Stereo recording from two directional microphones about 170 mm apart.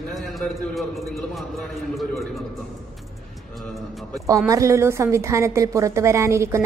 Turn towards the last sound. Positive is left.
turn(degrees=-15)  # may be behind; listen again after turning